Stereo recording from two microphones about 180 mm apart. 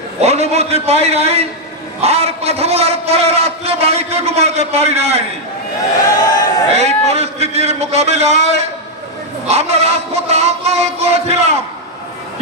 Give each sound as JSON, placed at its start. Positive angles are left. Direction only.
{"t": 0.2, "sound": "a man's voice", "side_deg": -35}
{"t": 6.2, "sound": "speech", "side_deg": 20}
{"t": 6.7, "sound": "a man's voice", "side_deg": -35}